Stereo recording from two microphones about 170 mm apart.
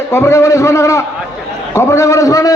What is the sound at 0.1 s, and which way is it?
A man's voice, 15° left (ahead or behind).